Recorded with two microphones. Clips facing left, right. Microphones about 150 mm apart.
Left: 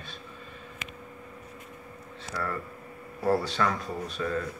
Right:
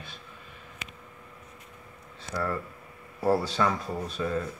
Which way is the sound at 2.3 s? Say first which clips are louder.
Right 3 dB; 15° right (ahead or behind).